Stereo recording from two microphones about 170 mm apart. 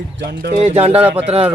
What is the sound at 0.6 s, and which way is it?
Speech, 40° right (ahead or behind).